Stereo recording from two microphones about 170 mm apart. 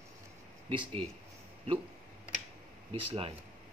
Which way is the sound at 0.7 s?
30° right (ahead or behind).